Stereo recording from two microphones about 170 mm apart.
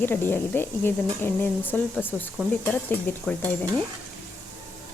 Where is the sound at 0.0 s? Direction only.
15° left (ahead or behind).